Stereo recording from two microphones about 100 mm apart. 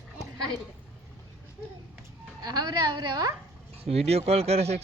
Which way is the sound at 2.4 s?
40° right (ahead or behind).